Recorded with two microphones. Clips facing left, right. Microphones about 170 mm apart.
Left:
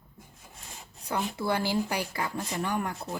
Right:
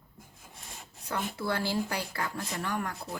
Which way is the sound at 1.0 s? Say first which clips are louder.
Left 3 dB; 15° left (ahead or behind).